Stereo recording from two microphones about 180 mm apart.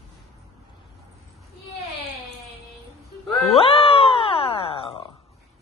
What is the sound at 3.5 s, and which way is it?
Music, 30° left (ahead or behind).